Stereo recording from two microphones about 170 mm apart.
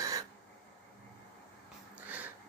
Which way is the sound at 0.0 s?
20° right (ahead or behind).